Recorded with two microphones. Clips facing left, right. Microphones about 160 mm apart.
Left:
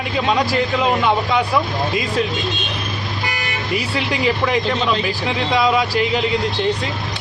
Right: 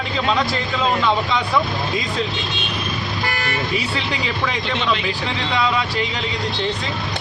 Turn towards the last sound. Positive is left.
turn(degrees=10)  # may be behind; listen again after turning